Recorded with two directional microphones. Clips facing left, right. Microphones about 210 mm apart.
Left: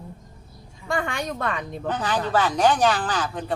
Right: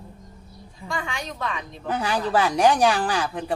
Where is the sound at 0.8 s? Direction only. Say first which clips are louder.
Left 5 dB; 55° left (ahead or behind).